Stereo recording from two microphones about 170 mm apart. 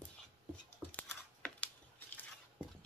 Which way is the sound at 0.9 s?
10° left (ahead or behind).